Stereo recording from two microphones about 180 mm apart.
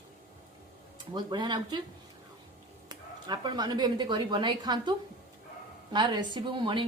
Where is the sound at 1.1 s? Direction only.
25° right (ahead or behind).